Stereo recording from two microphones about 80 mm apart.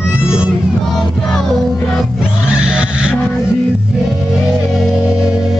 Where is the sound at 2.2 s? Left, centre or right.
Centre.